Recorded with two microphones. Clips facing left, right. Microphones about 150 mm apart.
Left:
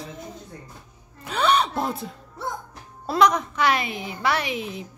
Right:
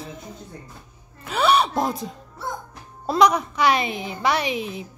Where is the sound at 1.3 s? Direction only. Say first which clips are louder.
Right 2 dB; 10° right (ahead or behind).